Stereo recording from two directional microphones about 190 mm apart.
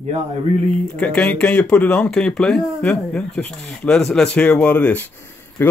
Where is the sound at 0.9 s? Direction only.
5° left (ahead or behind).